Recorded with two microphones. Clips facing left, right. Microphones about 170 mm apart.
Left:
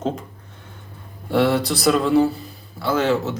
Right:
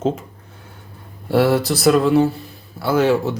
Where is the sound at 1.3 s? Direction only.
5° right (ahead or behind).